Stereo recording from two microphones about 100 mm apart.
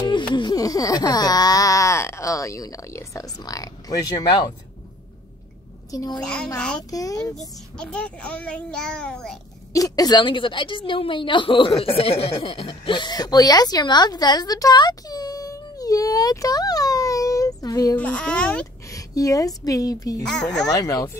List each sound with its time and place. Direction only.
0.0 s a sound: 55° left (ahead or behind)
5.9 s a child's voice: 40° left (ahead or behind)
6.2 s a child's voice: 10° left (ahead or behind)
6.9 s a woman's voice: 35° left (ahead or behind)
7.3 s a child's voice: 10° left (ahead or behind)
9.7 s a woman's voice: 35° left (ahead or behind)
17.9 s a child's voice: 10° left (ahead or behind)
18.9 s a woman's voice: 35° left (ahead or behind)
20.2 s speech: 5° left (ahead or behind)
20.7 s a woman's voice: 35° left (ahead or behind)